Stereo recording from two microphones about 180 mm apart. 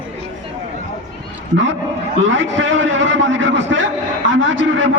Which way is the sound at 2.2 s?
90° right.